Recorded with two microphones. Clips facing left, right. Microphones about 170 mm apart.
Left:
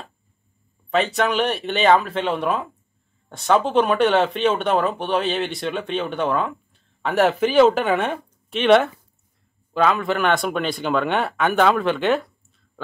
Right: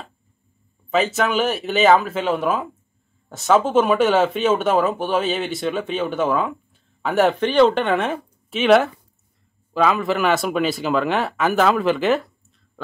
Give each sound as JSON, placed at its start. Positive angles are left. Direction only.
{"t": 0.8, "sound": "speech", "side_deg": 0}